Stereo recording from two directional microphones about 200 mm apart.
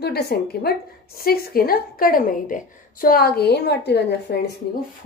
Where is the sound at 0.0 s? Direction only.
55° left (ahead or behind).